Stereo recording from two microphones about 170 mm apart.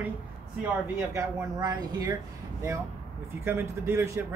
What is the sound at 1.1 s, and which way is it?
Speech, 20° right (ahead or behind).